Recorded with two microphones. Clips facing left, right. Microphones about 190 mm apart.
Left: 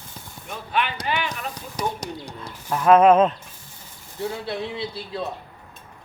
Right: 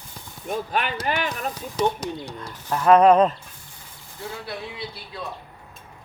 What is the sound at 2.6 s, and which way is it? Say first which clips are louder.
Speech: even; 5° left (ahead or behind).